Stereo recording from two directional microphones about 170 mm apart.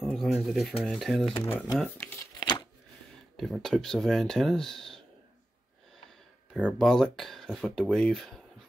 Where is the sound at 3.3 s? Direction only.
Centre (ahead or behind).